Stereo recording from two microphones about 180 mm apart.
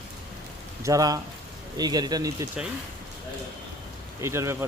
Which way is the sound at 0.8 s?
20° right (ahead or behind).